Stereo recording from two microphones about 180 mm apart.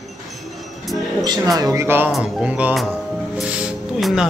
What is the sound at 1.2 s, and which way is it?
Speech, 20° right (ahead or behind).